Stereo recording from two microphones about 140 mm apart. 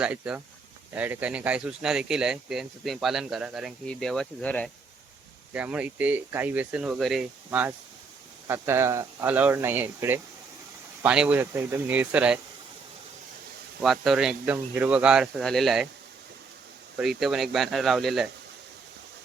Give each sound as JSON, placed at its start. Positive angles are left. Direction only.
{"t": 0.0, "sound": "speech", "side_deg": -10}
{"t": 5.5, "sound": "speech", "side_deg": -10}
{"t": 13.8, "sound": "speech", "side_deg": 0}
{"t": 17.0, "sound": "speech", "side_deg": 0}